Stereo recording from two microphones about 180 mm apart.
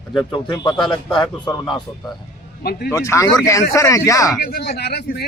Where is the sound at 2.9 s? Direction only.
15° left (ahead or behind).